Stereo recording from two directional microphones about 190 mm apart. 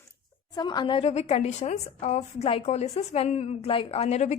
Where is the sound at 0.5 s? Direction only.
20° left (ahead or behind).